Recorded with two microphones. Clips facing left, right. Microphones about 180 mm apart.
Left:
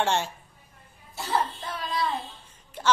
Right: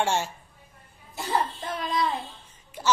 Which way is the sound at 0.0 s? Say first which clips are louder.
Even; 10° right (ahead or behind).